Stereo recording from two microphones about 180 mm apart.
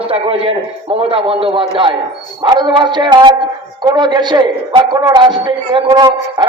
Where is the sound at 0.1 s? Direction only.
30° right (ahead or behind).